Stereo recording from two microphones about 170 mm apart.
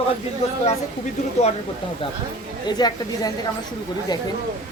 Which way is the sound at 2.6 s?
25° left (ahead or behind).